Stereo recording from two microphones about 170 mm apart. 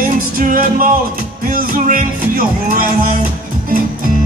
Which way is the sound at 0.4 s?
55° right (ahead or behind).